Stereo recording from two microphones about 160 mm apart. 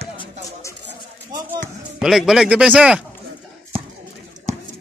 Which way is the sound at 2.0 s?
Centre (ahead or behind).